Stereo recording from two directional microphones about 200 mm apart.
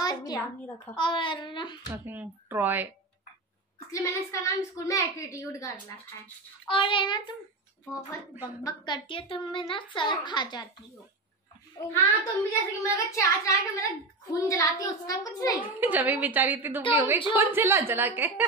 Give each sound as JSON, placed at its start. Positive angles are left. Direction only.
{"t": 0.0, "sound": "a sound", "side_deg": 20}
{"t": 0.9, "sound": "a woman's voice", "side_deg": 25}
{"t": 2.0, "sound": "a woman's voice", "side_deg": -10}
{"t": 3.9, "sound": "a woman's voice", "side_deg": 15}
{"t": 8.6, "sound": "a woman's voice", "side_deg": 20}
{"t": 11.9, "sound": "a woman's voice", "side_deg": 10}
{"t": 15.8, "sound": "a woman's voice", "side_deg": -10}